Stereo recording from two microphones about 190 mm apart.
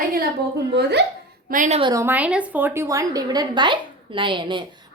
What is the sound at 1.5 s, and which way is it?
Speech, 40° right (ahead or behind).